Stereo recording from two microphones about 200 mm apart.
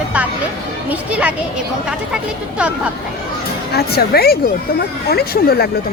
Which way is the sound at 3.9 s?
50° left (ahead or behind).